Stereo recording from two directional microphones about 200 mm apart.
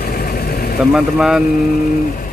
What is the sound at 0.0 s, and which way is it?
Vehicle, 50° left (ahead or behind).